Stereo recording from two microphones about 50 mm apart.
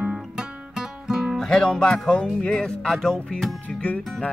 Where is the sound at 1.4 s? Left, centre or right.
Centre.